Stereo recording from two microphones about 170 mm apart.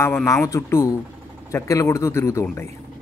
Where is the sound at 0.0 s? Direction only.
15° left (ahead or behind).